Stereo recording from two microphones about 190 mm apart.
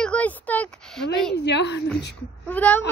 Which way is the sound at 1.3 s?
65° left (ahead or behind).